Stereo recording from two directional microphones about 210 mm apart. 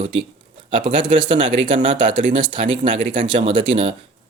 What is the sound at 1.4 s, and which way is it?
Speech, 65° right (ahead or behind).